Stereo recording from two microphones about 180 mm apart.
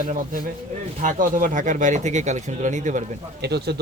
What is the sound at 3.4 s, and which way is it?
Speech, 65° right (ahead or behind).